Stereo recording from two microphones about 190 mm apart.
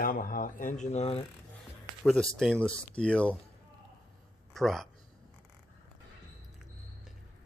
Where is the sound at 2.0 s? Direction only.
5° left (ahead or behind).